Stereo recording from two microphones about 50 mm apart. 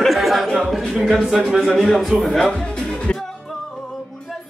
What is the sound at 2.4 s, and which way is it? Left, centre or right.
Music, centre.